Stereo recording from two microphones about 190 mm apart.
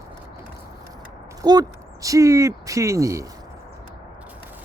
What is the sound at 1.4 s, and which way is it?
Speech, 20° right (ahead or behind).